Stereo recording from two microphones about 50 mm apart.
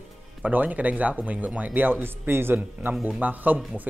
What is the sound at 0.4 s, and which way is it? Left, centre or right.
Speech, right.